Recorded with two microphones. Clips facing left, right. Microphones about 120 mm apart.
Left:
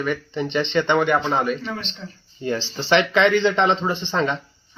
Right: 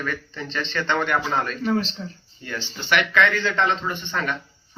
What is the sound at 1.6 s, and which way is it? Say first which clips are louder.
Speech: right 8 dB; 35° right (ahead or behind).